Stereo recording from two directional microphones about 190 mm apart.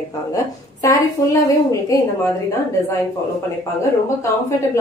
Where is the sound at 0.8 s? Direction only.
15° left (ahead or behind).